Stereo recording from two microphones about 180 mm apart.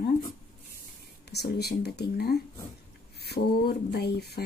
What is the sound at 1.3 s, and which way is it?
Speech, 60° left (ahead or behind).